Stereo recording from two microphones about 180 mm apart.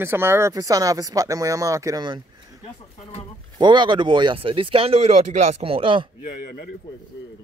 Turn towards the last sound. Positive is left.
turn(degrees=55)  # may be behind; listen again after turning